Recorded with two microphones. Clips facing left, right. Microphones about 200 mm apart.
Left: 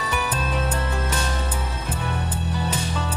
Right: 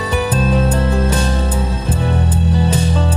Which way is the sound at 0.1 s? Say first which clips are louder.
Right 11 dB; 30° right (ahead or behind).